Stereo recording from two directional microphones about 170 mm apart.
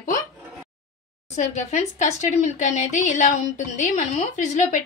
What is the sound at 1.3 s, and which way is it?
Speech, 40° left (ahead or behind).